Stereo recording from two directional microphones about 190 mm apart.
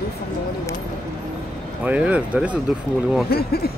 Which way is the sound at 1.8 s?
5° right (ahead or behind).